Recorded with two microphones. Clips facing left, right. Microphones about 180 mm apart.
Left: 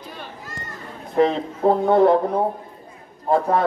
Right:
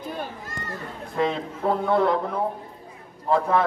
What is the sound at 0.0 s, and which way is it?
Children playing, 50° right (ahead or behind).